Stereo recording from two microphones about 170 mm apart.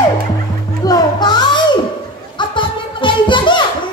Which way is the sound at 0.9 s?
25° left (ahead or behind).